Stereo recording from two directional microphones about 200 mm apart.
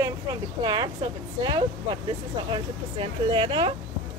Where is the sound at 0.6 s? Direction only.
20° right (ahead or behind).